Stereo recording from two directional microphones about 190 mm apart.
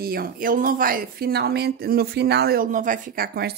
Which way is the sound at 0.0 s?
55° right (ahead or behind).